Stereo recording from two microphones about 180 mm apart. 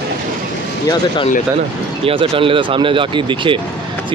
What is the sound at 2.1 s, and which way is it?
Speech, 30° right (ahead or behind).